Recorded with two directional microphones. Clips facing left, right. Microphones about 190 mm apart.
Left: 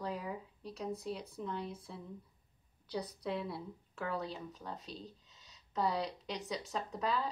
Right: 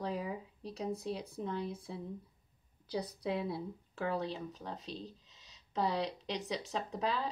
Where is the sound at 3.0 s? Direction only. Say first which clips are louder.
Right 3 dB; 35° right (ahead or behind).